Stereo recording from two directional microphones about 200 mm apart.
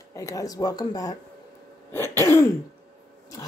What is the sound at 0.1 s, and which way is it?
A woman's voice, 15° left (ahead or behind).